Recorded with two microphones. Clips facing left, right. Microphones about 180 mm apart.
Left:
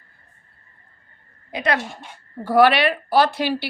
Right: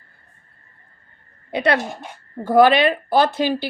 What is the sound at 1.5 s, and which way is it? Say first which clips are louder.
A woman's voice: right 4 dB; 30° right (ahead or behind).